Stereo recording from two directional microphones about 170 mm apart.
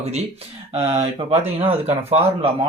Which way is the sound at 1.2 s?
35° right (ahead or behind).